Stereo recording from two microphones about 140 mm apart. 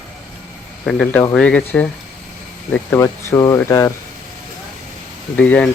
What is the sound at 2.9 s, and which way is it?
Speech, 20° left (ahead or behind).